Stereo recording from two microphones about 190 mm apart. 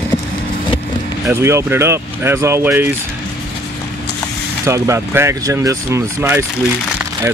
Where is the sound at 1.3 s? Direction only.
15° right (ahead or behind).